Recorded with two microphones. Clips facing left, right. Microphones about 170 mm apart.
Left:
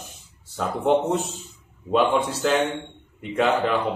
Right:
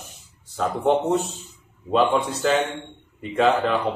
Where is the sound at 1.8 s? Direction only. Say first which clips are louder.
Even; centre (ahead or behind).